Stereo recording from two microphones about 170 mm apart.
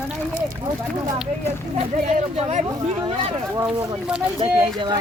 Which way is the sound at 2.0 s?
40° right (ahead or behind).